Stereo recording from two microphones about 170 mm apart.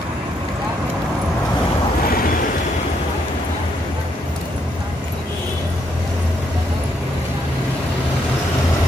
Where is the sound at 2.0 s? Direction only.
60° left (ahead or behind).